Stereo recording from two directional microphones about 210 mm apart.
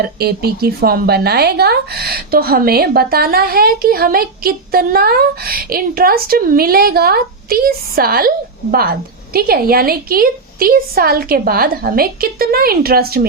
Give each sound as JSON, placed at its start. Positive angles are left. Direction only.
{"t": 0.2, "sound": "speech", "side_deg": -50}